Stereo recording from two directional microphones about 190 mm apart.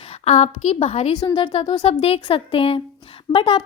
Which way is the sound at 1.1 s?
20° left (ahead or behind).